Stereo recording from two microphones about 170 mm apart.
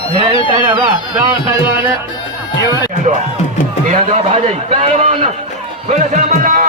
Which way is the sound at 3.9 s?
45° right (ahead or behind).